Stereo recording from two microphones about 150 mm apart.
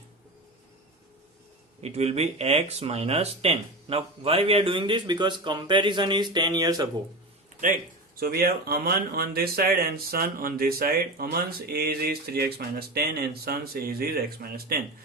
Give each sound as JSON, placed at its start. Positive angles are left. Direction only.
{"t": 1.8, "sound": "speech", "side_deg": -45}
{"t": 7.6, "sound": "speech", "side_deg": -75}